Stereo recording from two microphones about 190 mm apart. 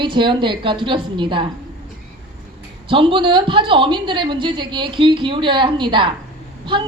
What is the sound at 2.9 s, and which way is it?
A woman's voice, 25° right (ahead or behind).